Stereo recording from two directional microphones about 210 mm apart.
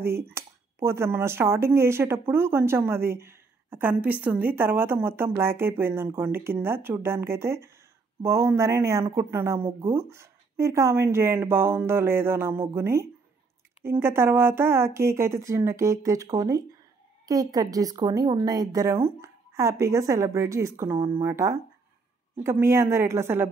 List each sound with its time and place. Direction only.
0.0 s speech: 10° right (ahead or behind)